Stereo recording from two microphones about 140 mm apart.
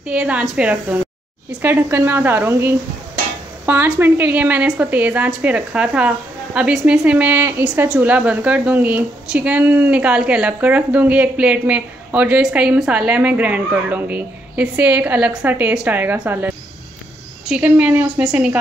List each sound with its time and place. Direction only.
0.0 s a woman's voice: 10° right (ahead or behind)